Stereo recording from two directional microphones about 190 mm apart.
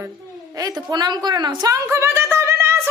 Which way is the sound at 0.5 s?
20° right (ahead or behind).